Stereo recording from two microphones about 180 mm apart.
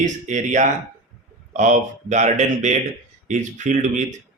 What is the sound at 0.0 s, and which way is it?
Speech, 45° right (ahead or behind).